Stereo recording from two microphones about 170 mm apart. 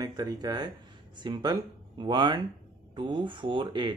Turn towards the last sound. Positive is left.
turn(degrees=-25)  # may be behind; listen again after turning